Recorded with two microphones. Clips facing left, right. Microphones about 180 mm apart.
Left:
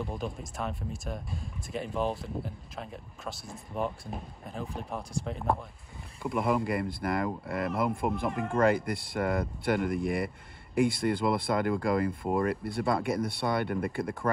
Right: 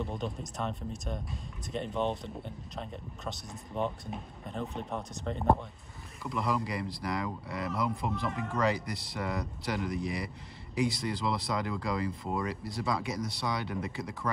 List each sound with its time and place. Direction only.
0.0 s a sound: centre (ahead or behind)
0.6 s speech: centre (ahead or behind)
6.2 s speech: 55° left (ahead or behind)
8.3 s speech: centre (ahead or behind)
8.5 s speech: 55° left (ahead or behind)